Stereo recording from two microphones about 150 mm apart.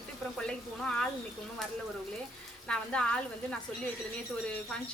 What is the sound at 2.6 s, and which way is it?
Speech, 5° left (ahead or behind).